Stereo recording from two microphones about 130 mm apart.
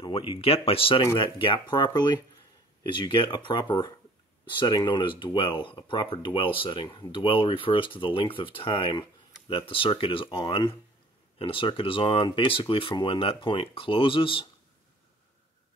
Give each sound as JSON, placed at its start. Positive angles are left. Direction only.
{"t": 0.1, "sound": "speech", "side_deg": 45}